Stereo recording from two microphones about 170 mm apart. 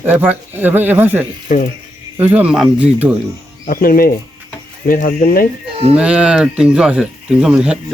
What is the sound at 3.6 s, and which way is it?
Speech, 55° left (ahead or behind).